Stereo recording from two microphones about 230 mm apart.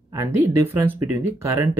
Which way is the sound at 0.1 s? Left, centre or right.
Centre.